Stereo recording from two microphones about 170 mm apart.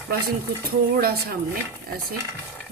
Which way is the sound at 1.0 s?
65° right (ahead or behind).